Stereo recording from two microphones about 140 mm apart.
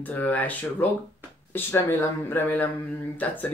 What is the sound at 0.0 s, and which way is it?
Speech, 10° left (ahead or behind).